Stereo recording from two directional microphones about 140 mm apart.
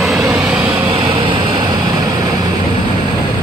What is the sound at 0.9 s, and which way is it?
Vehicle, 35° right (ahead or behind).